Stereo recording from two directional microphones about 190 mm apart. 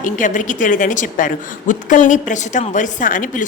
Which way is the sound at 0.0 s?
45° left (ahead or behind).